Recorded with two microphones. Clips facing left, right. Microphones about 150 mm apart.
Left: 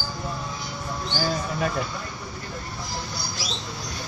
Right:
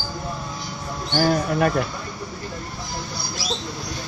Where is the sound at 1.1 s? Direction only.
60° right (ahead or behind).